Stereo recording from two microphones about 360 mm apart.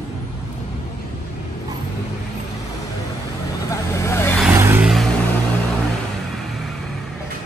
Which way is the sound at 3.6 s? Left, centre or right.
Centre.